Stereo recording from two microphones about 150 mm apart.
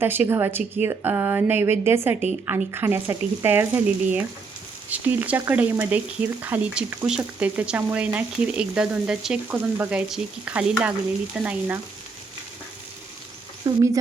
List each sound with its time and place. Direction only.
0.0 s speech: 15° right (ahead or behind)
13.7 s speech: 20° right (ahead or behind)